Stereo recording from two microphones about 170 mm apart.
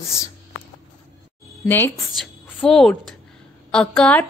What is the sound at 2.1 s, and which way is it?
A woman's voice, 5° left (ahead or behind).